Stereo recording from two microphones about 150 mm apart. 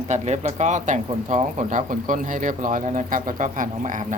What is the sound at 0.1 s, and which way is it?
Speech, 50° right (ahead or behind).